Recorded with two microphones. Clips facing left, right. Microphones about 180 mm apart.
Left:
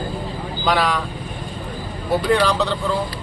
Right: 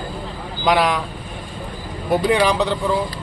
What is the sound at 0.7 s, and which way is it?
Speech, 15° right (ahead or behind).